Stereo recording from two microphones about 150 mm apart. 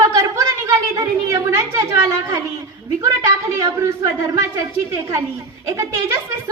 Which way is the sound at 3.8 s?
20° right (ahead or behind).